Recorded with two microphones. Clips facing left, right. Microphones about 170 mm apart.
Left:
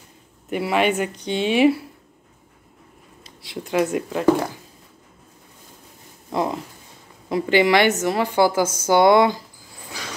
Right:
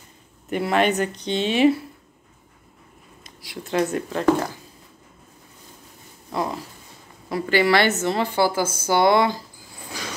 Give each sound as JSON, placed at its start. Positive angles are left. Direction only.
{"t": 0.5, "sound": "a woman's voice", "side_deg": 5}
{"t": 3.3, "sound": "a sound", "side_deg": 25}
{"t": 3.6, "sound": "a woman's voice", "side_deg": 10}
{"t": 6.3, "sound": "a woman's voice", "side_deg": 20}